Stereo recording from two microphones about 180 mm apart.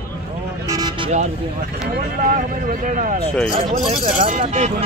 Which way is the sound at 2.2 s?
45° right (ahead or behind).